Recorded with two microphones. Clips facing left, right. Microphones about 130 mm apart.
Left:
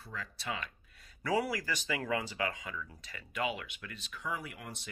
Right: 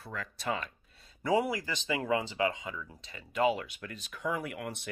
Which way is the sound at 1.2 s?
20° right (ahead or behind).